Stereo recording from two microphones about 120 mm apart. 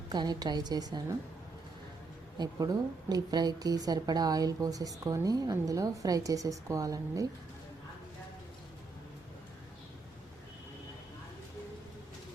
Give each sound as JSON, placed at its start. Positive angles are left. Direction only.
{"t": 0.1, "sound": "speech", "side_deg": -35}
{"t": 2.4, "sound": "speech", "side_deg": -35}